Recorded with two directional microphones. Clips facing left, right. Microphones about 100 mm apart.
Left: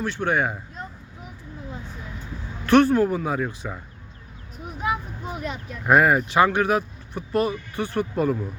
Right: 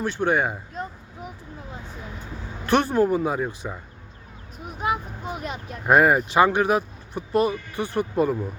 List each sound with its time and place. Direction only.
0.3 s a sound: 20° right (ahead or behind)
2.6 s speech: 25° right (ahead or behind)
3.2 s speech: 15° right (ahead or behind)